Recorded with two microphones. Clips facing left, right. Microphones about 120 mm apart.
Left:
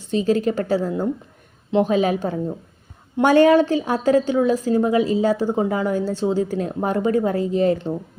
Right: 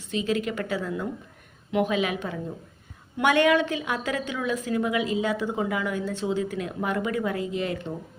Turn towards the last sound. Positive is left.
turn(degrees=35)  # may be behind; listen again after turning